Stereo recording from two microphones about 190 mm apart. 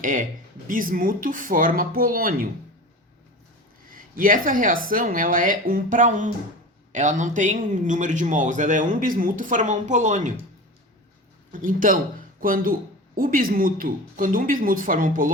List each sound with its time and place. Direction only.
0.0 s speech: 45° right (ahead or behind)
3.8 s a man's voice: 50° right (ahead or behind)
11.5 s speech: 45° right (ahead or behind)